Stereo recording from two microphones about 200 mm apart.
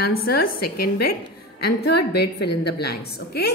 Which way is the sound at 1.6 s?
55° left (ahead or behind).